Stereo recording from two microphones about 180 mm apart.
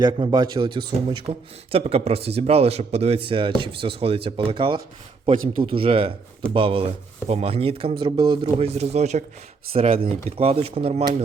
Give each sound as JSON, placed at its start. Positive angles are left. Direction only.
{"t": 0.0, "sound": "speech", "side_deg": -25}